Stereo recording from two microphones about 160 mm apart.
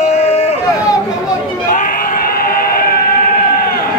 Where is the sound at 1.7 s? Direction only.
60° left (ahead or behind).